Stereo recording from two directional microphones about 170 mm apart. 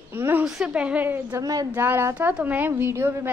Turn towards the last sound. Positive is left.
turn(degrees=-15)  # may be behind; listen again after turning